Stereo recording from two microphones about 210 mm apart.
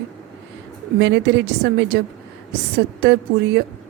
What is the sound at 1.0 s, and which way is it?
A woman's voice, 55° right (ahead or behind).